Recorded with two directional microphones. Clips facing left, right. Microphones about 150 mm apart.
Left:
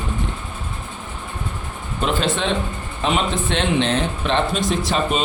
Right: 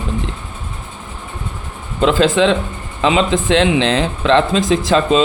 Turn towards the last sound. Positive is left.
turn(degrees=-90)